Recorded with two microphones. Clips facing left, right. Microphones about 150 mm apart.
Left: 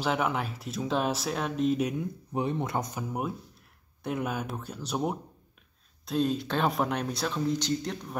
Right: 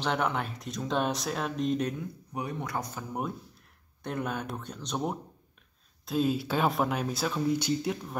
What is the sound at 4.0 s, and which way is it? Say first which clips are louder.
Speech: left 2 dB; 5° left (ahead or behind).